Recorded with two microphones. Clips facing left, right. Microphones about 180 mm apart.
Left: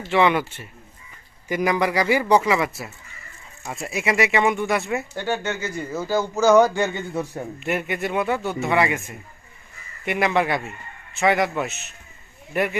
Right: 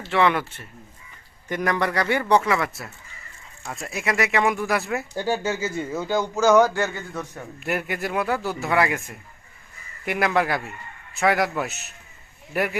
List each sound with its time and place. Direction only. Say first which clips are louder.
0.1 s speech: left 2 dB; 5° left (ahead or behind)
5.8 s speech: left 3 dB; centre (ahead or behind)
7.1 s a man's voice: left 6 dB; 30° left (ahead or behind)
7.6 s speech: left 1 dB; centre (ahead or behind)